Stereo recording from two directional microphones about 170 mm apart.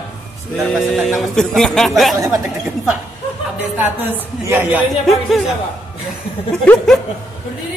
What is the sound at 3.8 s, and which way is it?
A woman's voice, 10° right (ahead or behind).